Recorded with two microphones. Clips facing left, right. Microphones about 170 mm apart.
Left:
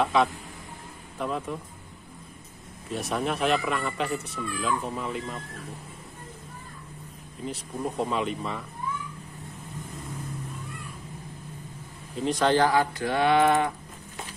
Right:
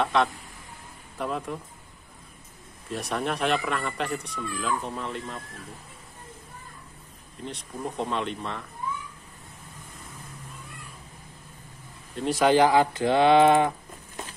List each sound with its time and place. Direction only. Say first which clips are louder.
0.0 s speech: left 1 dB; centre (ahead or behind)
2.9 s speech: left 1 dB; centre (ahead or behind)
7.4 s speech: left 2 dB; 5° left (ahead or behind)
12.2 s speech: right 2 dB; 5° right (ahead or behind); by 13.7 s 20° right (ahead or behind)